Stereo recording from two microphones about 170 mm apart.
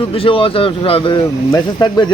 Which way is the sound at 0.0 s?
35° left (ahead or behind).